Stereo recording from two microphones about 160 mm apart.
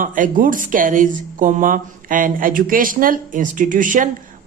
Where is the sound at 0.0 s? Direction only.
55° right (ahead or behind).